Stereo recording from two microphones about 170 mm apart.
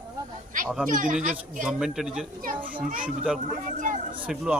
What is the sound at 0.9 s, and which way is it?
Speech, 50° right (ahead or behind).